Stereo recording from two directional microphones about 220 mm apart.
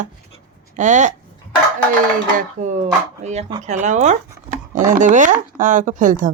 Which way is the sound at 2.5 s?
30° right (ahead or behind).